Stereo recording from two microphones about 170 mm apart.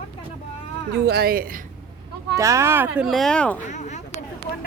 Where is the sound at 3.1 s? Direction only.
Centre (ahead or behind).